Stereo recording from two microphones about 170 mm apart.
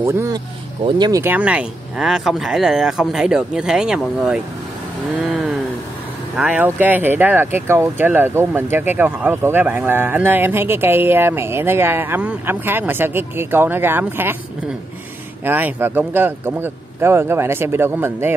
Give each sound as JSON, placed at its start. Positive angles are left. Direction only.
{"t": 0.0, "sound": "speech", "side_deg": -15}
{"t": 1.2, "sound": "speech", "side_deg": -10}
{"t": 6.3, "sound": "speech", "side_deg": -10}
{"t": 15.4, "sound": "speech", "side_deg": -10}